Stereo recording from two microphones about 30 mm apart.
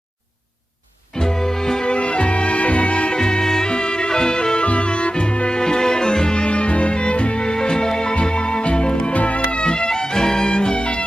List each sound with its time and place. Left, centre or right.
1.1 s music: left
1.8 s music: left
3.1 s music: left
3.7 s music: left
5.5 s music: left
9.1 s music: left
9.6 s music: left
9.9 s music: left